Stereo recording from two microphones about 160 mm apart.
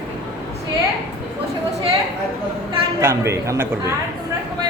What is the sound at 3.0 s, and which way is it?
Speech, 15° right (ahead or behind).